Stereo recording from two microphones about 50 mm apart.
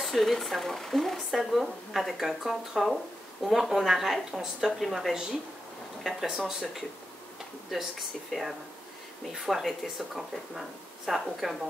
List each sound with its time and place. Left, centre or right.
0.0 s speech: centre
8.3 s speech: centre